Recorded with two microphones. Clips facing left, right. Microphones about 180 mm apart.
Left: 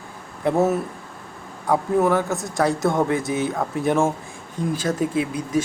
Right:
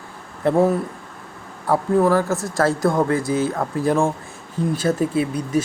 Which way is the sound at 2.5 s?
20° left (ahead or behind).